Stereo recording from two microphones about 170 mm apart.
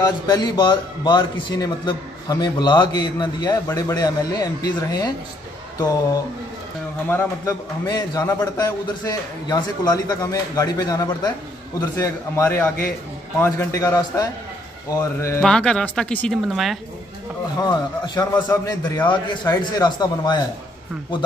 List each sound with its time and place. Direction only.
0.0 s a man's voice: 25° left (ahead or behind)
7.1 s a man's voice: 10° left (ahead or behind)
7.8 s a man's voice: 25° left (ahead or behind)
15.4 s speech: 5° left (ahead or behind)
17.6 s a man's voice: 25° left (ahead or behind)